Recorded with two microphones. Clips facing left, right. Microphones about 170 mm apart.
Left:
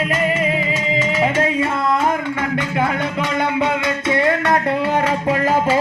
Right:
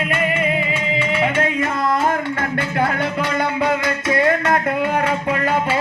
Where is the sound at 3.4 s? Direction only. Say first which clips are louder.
Left 1 dB; 25° left (ahead or behind).